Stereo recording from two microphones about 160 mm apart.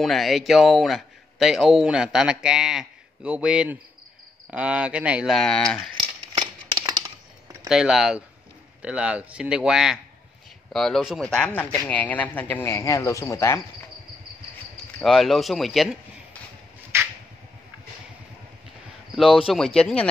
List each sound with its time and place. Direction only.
0.0 s speech: centre (ahead or behind)
6.3 s a sound: 30° right (ahead or behind)
7.6 s speech: centre (ahead or behind); by 13.6 s 20° left (ahead or behind)
15.0 s speech: centre (ahead or behind)
16.9 s a sound: 15° right (ahead or behind)
19.1 s speech: 5° right (ahead or behind)